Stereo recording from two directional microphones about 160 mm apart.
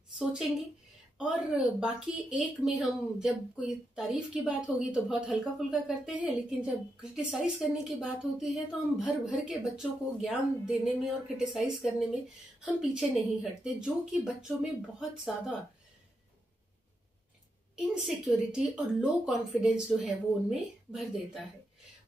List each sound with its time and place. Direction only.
0.2 s speech: 5° right (ahead or behind)
17.7 s speech: 5° right (ahead or behind)